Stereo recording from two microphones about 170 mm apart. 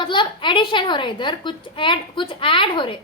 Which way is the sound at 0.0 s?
25° left (ahead or behind).